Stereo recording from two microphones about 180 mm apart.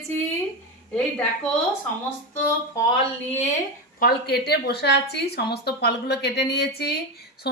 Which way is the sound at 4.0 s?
60° left (ahead or behind).